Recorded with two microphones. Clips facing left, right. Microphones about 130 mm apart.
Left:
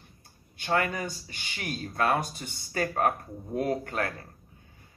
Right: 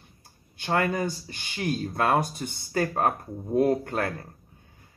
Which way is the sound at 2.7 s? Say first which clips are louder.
Right 2 dB; 35° right (ahead or behind).